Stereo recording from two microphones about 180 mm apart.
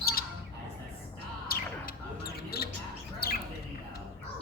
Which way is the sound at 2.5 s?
60° left (ahead or behind).